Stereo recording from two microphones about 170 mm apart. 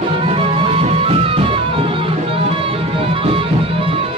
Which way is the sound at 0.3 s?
30° right (ahead or behind).